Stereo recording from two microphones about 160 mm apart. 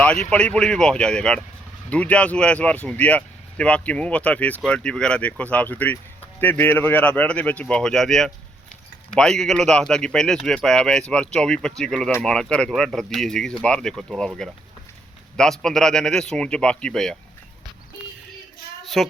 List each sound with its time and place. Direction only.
0.3 s speech: 5° left (ahead or behind)
19.0 s speech: centre (ahead or behind)